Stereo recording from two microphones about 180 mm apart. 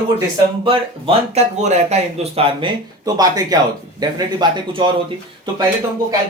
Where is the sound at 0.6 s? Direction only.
30° right (ahead or behind).